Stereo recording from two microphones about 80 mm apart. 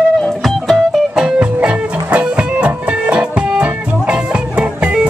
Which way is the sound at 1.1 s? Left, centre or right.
Centre.